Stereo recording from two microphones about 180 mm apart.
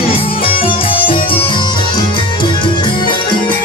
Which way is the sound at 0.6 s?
30° left (ahead or behind).